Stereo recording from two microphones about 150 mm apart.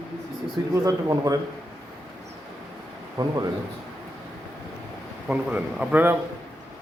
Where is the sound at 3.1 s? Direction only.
25° right (ahead or behind).